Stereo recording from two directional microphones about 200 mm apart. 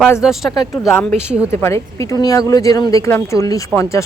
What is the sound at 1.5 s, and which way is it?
A woman's voice, 15° left (ahead or behind).